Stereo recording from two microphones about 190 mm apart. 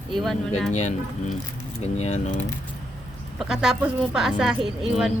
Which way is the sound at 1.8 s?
35° left (ahead or behind).